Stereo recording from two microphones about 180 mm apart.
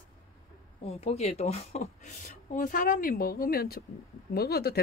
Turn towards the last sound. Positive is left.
turn(degrees=60)  # may be behind; listen again after turning